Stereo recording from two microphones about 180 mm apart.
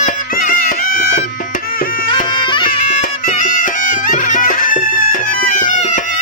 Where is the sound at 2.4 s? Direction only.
25° left (ahead or behind).